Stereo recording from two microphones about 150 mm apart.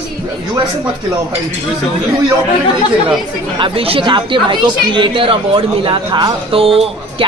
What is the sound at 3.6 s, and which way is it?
Speech, 35° right (ahead or behind).